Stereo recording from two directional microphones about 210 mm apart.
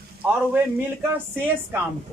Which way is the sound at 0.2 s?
10° right (ahead or behind).